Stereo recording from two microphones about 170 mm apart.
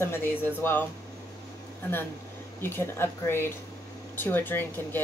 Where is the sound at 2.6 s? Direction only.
15° left (ahead or behind).